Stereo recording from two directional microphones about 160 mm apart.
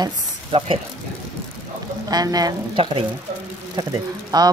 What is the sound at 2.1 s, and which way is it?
Speech, 25° right (ahead or behind).